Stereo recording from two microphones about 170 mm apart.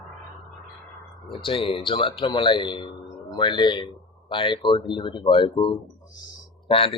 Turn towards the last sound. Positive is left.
turn(degrees=30)  # may be behind; listen again after turning